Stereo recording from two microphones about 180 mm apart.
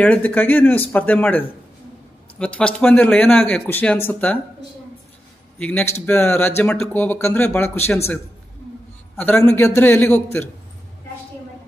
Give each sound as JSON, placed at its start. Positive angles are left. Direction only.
{"t": 0.0, "sound": "speech", "side_deg": 10}
{"t": 5.6, "sound": "speech", "side_deg": 5}
{"t": 9.2, "sound": "speech", "side_deg": 10}